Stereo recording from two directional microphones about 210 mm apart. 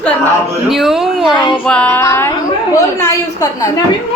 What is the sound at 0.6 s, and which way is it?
A woman's voice, centre (ahead or behind).